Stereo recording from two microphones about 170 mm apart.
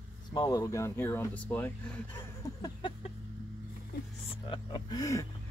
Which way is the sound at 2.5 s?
25° left (ahead or behind).